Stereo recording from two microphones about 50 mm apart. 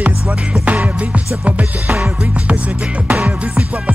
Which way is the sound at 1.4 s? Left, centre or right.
Right.